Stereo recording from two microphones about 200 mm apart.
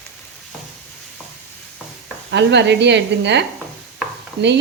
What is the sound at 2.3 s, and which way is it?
A woman's voice, 60° right (ahead or behind).